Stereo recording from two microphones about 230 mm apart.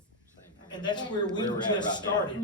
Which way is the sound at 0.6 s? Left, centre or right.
Centre.